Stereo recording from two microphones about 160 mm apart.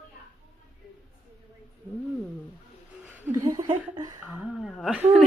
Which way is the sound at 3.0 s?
10° right (ahead or behind).